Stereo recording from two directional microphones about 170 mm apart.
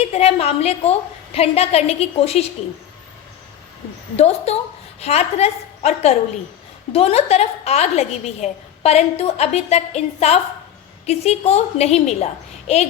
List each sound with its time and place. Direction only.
0.0 s a woman's voice: 35° left (ahead or behind)
4.2 s a woman's voice: 40° left (ahead or behind)